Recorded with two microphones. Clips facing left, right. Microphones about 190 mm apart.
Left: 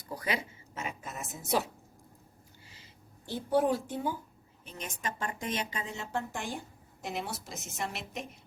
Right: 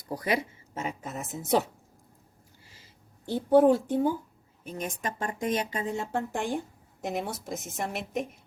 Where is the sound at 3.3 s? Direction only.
50° right (ahead or behind).